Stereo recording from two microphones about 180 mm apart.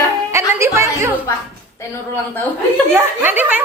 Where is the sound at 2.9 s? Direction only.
10° right (ahead or behind).